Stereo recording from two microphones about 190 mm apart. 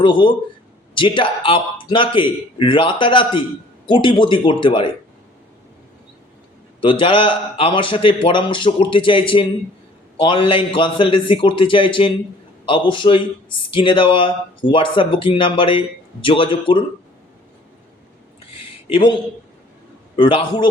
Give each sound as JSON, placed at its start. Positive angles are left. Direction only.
{"t": 0.0, "sound": "a man's voice", "side_deg": 25}
{"t": 6.8, "sound": "a man's voice", "side_deg": 25}
{"t": 18.9, "sound": "a man's voice", "side_deg": 30}
{"t": 20.1, "sound": "a man's voice", "side_deg": 25}